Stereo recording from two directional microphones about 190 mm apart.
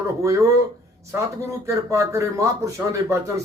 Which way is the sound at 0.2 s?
15° right (ahead or behind).